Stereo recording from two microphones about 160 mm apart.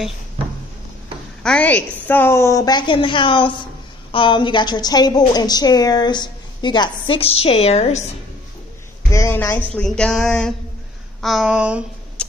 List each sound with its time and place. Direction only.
1.4 s a woman's voice: 5° left (ahead or behind); by 8.0 s 45° left (ahead or behind)
9.1 s speech: 15° left (ahead or behind); by 11.8 s 5° right (ahead or behind)
12.2 s tick-tock: 5° left (ahead or behind)